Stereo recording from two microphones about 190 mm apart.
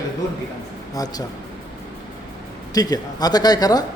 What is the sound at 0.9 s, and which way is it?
Speech, 20° left (ahead or behind).